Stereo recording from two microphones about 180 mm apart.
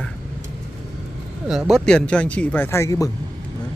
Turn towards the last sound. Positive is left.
turn(degrees=15)  # may be behind; listen again after turning